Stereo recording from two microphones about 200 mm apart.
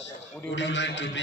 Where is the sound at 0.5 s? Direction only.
65° left (ahead or behind).